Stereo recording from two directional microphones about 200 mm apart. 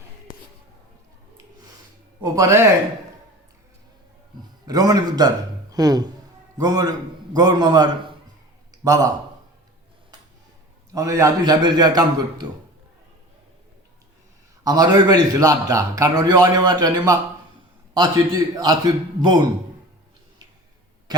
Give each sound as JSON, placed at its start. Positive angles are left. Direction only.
{"t": 2.2, "sound": "a man's voice", "side_deg": -15}
{"t": 4.6, "sound": "a man's voice", "side_deg": -20}
{"t": 10.9, "sound": "a man's voice", "side_deg": -15}
{"t": 14.6, "sound": "a man's voice", "side_deg": -20}